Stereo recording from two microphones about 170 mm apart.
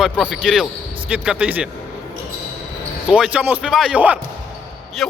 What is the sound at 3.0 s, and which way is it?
A man's voice, 5° right (ahead or behind).